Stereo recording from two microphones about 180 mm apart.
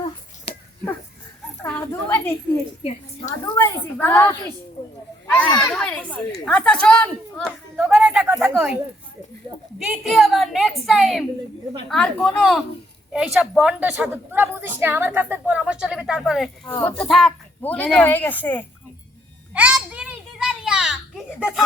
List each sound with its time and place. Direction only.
1.6 s speech: 10° left (ahead or behind)
3.4 s a woman's voice: 20° left (ahead or behind)
19.5 s children playing: 5° right (ahead or behind)